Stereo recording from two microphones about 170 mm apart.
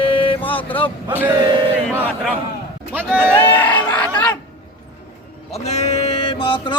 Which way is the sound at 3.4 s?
10° left (ahead or behind).